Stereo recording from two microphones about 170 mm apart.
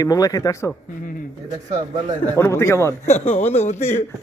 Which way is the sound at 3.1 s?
40° left (ahead or behind).